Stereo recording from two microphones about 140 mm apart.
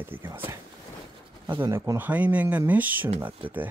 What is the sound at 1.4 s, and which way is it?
Speech, 30° right (ahead or behind).